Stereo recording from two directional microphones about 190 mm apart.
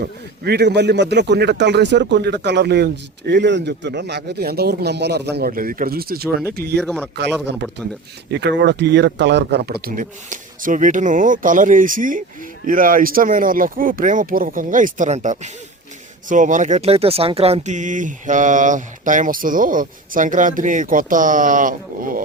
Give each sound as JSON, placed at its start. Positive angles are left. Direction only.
{"t": 0.0, "sound": "a man's voice", "side_deg": -60}
{"t": 6.7, "sound": "speech", "side_deg": 5}
{"t": 8.3, "sound": "speech", "side_deg": -60}